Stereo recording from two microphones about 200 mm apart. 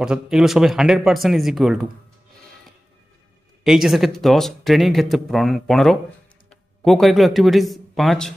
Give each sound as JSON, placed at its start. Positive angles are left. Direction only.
{"t": 0.0, "sound": "speech", "side_deg": -5}
{"t": 3.6, "sound": "speech", "side_deg": 0}